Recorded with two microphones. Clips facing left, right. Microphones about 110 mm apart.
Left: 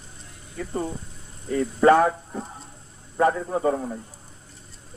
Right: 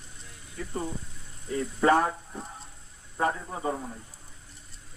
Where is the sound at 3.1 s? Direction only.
75° left (ahead or behind).